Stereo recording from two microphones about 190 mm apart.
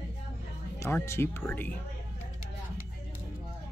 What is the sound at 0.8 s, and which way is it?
Speech, 15° left (ahead or behind).